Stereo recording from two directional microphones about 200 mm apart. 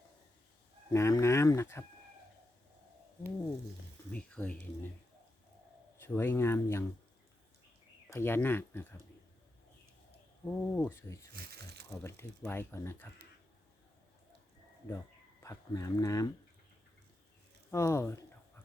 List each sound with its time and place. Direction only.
0.9 s speech: 15° left (ahead or behind)
4.1 s speech: 5° left (ahead or behind)
6.0 s speech: 10° left (ahead or behind)
8.1 s speech: 10° left (ahead or behind)
10.4 s speech: 10° left (ahead or behind)
11.3 s a sound: 55° right (ahead or behind)
12.0 s speech: 10° left (ahead or behind)
15.4 s speech: 15° left (ahead or behind)
17.7 s speech: 15° left (ahead or behind)